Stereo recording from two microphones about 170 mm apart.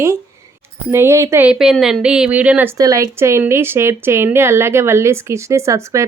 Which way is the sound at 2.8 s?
20° right (ahead or behind).